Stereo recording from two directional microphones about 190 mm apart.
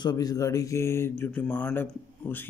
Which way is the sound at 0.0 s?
20° left (ahead or behind).